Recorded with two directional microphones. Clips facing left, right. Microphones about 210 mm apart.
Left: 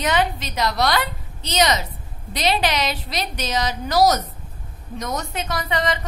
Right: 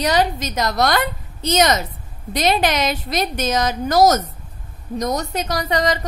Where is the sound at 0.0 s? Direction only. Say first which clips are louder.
Right 3 dB; 40° right (ahead or behind).